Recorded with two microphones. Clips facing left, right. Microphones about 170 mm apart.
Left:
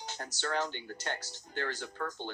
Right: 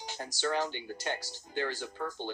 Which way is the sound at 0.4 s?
15° right (ahead or behind).